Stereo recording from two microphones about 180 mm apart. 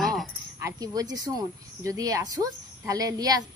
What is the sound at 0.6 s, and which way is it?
A woman's voice, 20° right (ahead or behind).